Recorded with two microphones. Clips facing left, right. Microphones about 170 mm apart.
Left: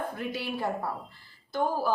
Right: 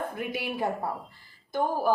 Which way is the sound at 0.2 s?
15° right (ahead or behind).